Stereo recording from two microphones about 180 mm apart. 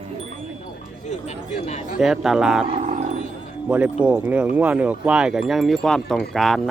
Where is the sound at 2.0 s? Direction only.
Centre (ahead or behind).